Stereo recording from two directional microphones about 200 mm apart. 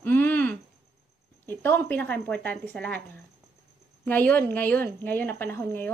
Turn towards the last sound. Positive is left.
turn(degrees=10)  # may be behind; listen again after turning